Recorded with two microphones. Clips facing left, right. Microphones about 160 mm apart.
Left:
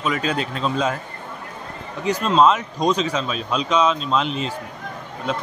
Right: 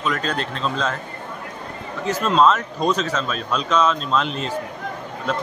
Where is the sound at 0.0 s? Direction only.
5° left (ahead or behind).